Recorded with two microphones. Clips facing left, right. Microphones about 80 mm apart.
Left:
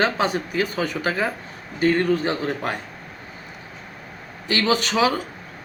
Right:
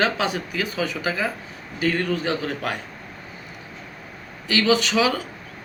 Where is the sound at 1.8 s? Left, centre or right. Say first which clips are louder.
Left 4 dB; left.